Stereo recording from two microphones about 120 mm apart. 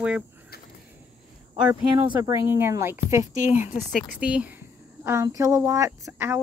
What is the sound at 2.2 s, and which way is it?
A woman's voice, 25° right (ahead or behind).